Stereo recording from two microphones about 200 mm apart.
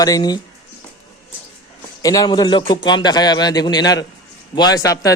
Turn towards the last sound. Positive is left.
turn(degrees=15)  # may be behind; listen again after turning